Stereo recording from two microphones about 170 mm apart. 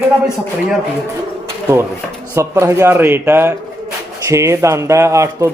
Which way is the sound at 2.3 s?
15° right (ahead or behind).